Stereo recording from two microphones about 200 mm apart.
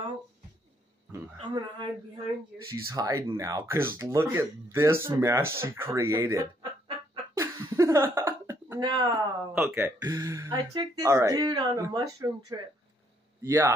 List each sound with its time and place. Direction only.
1.1 s speech: 20° right (ahead or behind)
2.9 s speech: 15° right (ahead or behind)
7.3 s a sound: 15° right (ahead or behind)
9.6 s speech: 5° right (ahead or behind)